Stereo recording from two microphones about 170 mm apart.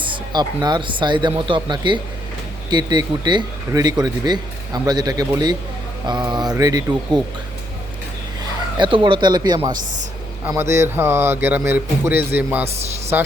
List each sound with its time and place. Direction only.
0.0 s a man's voice: 25° right (ahead or behind)
8.8 s a man's voice: 30° right (ahead or behind)
10.5 s speech: 15° right (ahead or behind)